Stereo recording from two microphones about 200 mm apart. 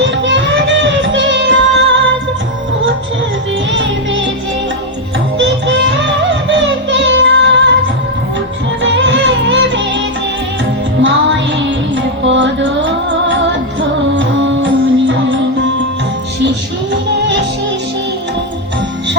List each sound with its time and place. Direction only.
0.0 s music: 65° right (ahead or behind)
3.7 s music: 65° right (ahead or behind)
5.4 s music: 65° right (ahead or behind)
8.8 s music: 65° right (ahead or behind)
11.0 s music: 65° right (ahead or behind)
16.9 s music: 65° right (ahead or behind)